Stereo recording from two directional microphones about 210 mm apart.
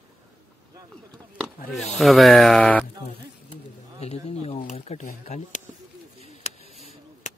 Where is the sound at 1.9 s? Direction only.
Centre (ahead or behind).